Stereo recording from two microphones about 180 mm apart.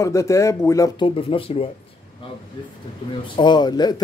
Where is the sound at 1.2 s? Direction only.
30° left (ahead or behind).